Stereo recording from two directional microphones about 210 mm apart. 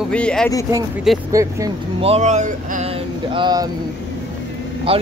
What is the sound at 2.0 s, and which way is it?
Speech, 30° right (ahead or behind).